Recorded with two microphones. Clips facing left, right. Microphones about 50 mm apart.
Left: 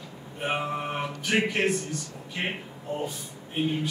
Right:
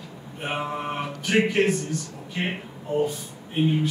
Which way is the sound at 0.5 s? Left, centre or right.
Centre.